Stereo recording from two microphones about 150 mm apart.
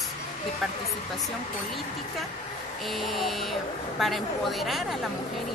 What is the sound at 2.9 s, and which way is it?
Speech, centre (ahead or behind).